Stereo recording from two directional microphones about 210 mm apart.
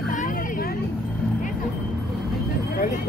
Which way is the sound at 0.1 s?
40° left (ahead or behind).